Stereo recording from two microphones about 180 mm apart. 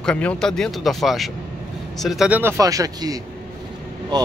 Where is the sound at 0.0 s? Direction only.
5° left (ahead or behind); by 3.2 s 20° right (ahead or behind).